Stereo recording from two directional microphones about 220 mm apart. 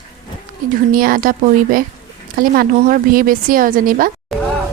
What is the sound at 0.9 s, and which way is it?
Speech, 40° right (ahead or behind).